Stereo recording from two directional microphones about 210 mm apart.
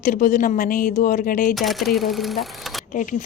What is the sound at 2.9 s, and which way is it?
Speech, 40° left (ahead or behind).